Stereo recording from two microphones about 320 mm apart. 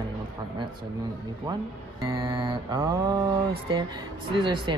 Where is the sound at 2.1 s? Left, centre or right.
Centre.